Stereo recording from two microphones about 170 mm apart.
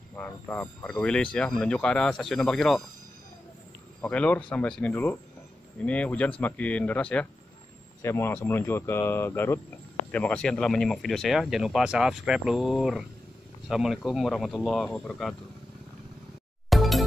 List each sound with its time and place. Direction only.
0.1 s speech: 10° left (ahead or behind)
4.0 s speech: 5° left (ahead or behind)
16.6 s music: centre (ahead or behind)